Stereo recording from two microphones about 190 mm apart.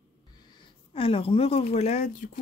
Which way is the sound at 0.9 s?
30° left (ahead or behind).